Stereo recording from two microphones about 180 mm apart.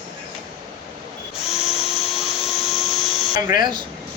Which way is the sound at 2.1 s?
Centre (ahead or behind).